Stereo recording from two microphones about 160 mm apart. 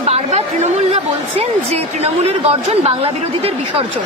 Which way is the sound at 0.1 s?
40° right (ahead or behind).